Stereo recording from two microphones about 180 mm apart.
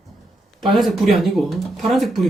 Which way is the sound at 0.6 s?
Centre (ahead or behind).